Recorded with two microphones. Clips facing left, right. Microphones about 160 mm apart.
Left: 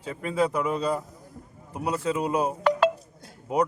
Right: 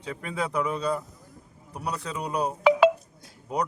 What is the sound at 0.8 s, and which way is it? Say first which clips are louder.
Speech: left 1 dB; 20° left (ahead or behind).